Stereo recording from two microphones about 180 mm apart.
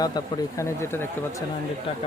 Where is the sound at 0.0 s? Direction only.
20° left (ahead or behind).